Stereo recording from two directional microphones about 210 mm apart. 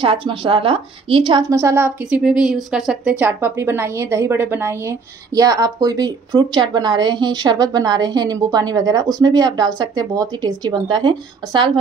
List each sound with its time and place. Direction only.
0.0 s a woman's voice: 25° right (ahead or behind)